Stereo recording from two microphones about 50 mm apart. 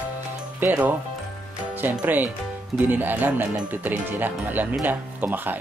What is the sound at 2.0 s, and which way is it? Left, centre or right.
Speech, right.